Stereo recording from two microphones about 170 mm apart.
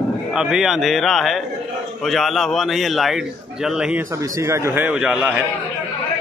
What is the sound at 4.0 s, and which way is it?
A man's voice, 20° right (ahead or behind).